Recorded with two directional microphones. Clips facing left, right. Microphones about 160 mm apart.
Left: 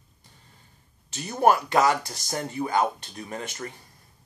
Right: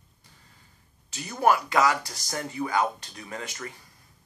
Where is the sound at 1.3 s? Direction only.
30° left (ahead or behind).